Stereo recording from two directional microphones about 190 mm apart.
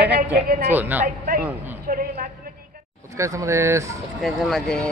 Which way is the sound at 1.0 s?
45° right (ahead or behind).